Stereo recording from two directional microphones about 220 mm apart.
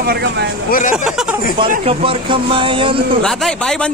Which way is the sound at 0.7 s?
40° left (ahead or behind).